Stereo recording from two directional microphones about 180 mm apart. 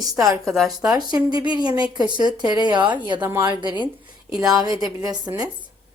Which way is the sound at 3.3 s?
15° right (ahead or behind).